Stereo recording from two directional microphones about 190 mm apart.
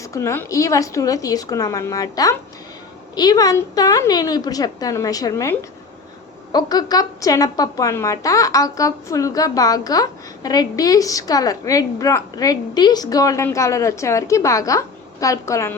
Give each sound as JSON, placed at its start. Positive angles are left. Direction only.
{"t": 0.0, "sound": "a woman's voice", "side_deg": 15}